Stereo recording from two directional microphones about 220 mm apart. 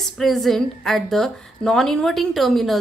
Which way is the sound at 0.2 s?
Centre (ahead or behind).